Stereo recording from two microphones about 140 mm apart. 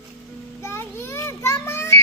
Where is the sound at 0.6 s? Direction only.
15° left (ahead or behind).